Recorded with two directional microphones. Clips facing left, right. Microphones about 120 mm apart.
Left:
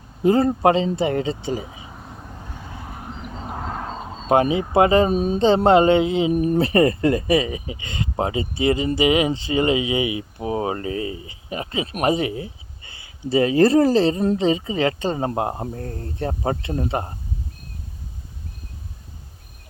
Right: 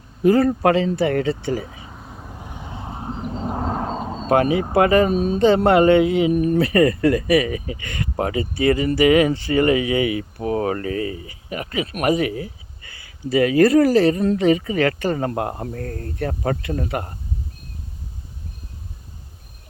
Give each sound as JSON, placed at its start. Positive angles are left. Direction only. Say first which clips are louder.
{"t": 0.2, "sound": "speech", "louder": "right 1 dB", "side_deg": 25}
{"t": 1.9, "sound": "vehicle", "louder": "even", "side_deg": 0}
{"t": 3.1, "sound": "a sound", "louder": "right 9 dB", "side_deg": -35}
{"t": 3.5, "sound": "a sound", "louder": "right 4 dB", "side_deg": -25}
{"t": 4.3, "sound": "speech", "louder": "even", "side_deg": 20}
{"t": 5.1, "sound": "speech", "louder": "right 1 dB", "side_deg": -45}
{"t": 5.4, "sound": "speech", "louder": "even", "side_deg": 25}
{"t": 6.3, "sound": "speech", "louder": "right 1 dB", "side_deg": 35}